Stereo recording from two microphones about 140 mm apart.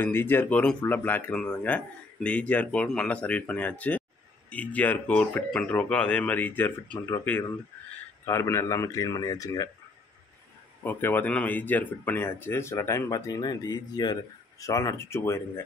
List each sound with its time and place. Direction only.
0.0 s speech: 15° left (ahead or behind)
10.8 s speech: 15° left (ahead or behind)